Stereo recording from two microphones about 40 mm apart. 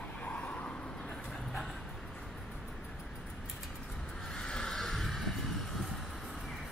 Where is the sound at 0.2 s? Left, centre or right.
Left.